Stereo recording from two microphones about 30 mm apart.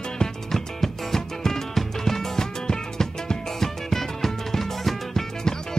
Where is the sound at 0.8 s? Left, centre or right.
Centre.